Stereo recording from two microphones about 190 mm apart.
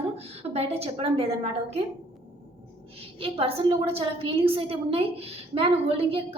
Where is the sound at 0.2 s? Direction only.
35° right (ahead or behind).